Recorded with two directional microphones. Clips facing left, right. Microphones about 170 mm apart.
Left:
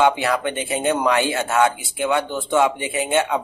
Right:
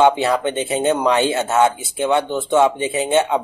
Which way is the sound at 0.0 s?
25° right (ahead or behind).